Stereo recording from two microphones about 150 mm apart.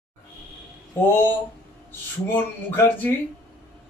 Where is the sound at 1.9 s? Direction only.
15° left (ahead or behind).